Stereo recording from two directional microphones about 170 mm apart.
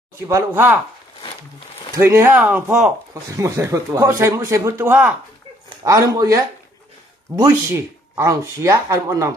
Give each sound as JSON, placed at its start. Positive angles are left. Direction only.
{"t": 0.2, "sound": "speech", "side_deg": -15}
{"t": 2.0, "sound": "speech", "side_deg": -15}
{"t": 5.9, "sound": "speech", "side_deg": -20}